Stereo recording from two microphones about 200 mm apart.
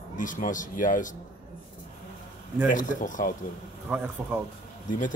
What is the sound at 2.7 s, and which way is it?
Speech, 40° left (ahead or behind).